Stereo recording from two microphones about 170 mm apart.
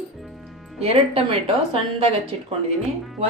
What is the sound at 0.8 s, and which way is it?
Speech, 35° right (ahead or behind).